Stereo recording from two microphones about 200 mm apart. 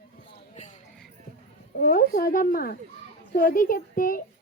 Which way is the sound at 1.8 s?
45° left (ahead or behind).